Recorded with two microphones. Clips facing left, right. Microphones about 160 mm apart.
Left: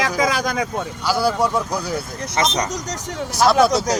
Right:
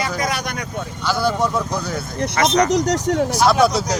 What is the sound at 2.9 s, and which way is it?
Speech, 70° right (ahead or behind).